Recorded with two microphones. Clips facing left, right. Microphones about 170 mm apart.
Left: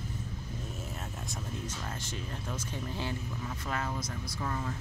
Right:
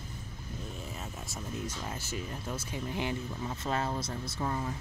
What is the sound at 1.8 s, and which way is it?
Speech, 10° right (ahead or behind).